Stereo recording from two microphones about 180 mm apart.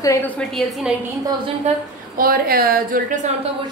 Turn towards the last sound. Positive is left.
turn(degrees=-50)  # may be behind; listen again after turning